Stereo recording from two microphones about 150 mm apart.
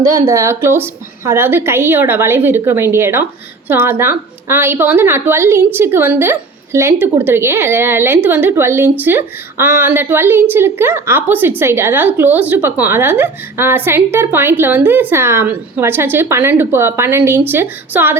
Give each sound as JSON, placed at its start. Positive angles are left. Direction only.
{"t": 0.0, "sound": "a woman's voice", "side_deg": -20}